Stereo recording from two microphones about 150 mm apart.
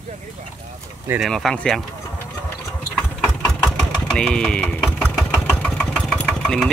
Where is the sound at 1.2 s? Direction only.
Centre (ahead or behind).